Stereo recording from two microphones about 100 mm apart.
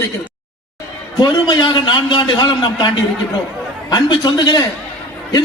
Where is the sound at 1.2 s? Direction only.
45° left (ahead or behind).